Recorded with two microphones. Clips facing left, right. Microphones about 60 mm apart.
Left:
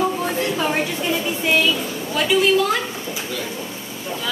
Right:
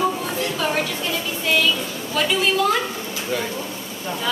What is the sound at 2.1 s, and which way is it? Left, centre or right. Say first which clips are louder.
Speech: left 3 dB; centre.